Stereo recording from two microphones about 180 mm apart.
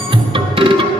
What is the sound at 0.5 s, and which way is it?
Music, 30° right (ahead or behind).